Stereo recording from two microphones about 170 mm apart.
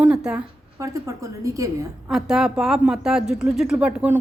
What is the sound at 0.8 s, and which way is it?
Speech, 20° right (ahead or behind).